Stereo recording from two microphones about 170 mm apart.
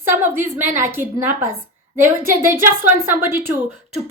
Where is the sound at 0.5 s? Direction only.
10° right (ahead or behind).